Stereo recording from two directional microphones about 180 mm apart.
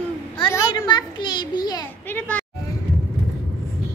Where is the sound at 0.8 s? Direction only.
25° left (ahead or behind).